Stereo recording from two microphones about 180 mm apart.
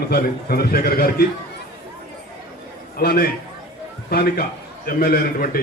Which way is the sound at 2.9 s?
55° left (ahead or behind).